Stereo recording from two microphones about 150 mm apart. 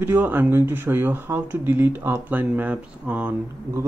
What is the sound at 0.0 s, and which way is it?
Speech, 15° right (ahead or behind).